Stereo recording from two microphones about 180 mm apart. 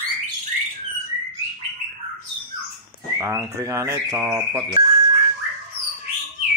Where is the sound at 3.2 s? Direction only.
15° right (ahead or behind).